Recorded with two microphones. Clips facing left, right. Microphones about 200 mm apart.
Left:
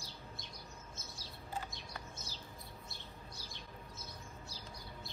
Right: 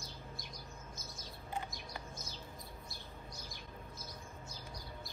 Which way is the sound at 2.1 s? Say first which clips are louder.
Right 2 dB; 30° left (ahead or behind).